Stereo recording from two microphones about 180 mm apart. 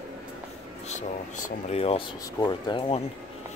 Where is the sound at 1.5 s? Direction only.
35° left (ahead or behind).